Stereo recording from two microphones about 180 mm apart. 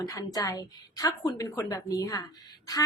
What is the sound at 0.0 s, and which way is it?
A woman's voice, 20° left (ahead or behind).